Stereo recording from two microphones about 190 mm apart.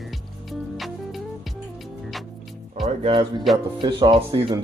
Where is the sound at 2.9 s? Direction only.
30° right (ahead or behind).